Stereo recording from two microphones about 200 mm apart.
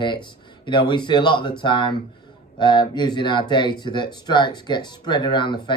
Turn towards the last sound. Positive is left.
turn(degrees=25)  # may be behind; listen again after turning